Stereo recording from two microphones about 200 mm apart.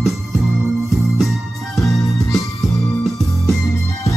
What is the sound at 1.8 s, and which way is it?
Music, centre (ahead or behind).